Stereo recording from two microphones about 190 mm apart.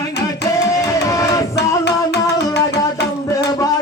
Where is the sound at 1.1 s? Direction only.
20° left (ahead or behind).